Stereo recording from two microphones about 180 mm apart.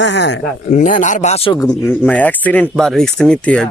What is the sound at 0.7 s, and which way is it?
Speech, 50° left (ahead or behind).